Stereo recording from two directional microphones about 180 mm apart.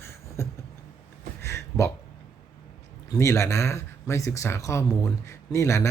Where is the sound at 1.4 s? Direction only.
15° left (ahead or behind).